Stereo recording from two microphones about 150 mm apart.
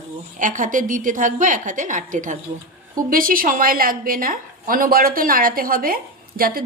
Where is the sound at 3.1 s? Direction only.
70° right (ahead or behind).